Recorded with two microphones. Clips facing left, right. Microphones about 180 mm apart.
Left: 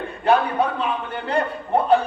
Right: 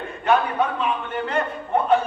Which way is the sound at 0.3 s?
35° left (ahead or behind).